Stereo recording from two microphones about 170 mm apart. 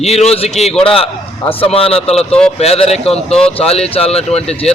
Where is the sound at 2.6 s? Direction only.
35° left (ahead or behind).